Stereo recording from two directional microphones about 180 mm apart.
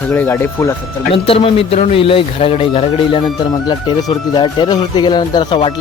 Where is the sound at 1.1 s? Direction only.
30° left (ahead or behind).